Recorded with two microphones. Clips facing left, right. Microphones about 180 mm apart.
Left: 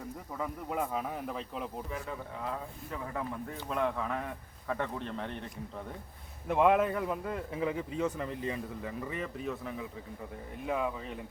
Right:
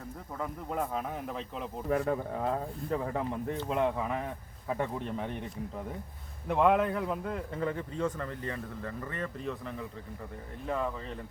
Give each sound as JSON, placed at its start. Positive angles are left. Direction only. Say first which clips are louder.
{"t": 0.3, "sound": "speech", "louder": "even", "side_deg": 0}
{"t": 1.9, "sound": "speech", "louder": "right 10 dB", "side_deg": -55}
{"t": 6.5, "sound": "a man's voice", "louder": "even", "side_deg": 5}